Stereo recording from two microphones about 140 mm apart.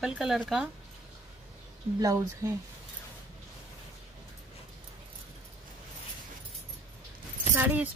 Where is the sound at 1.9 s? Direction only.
25° right (ahead or behind).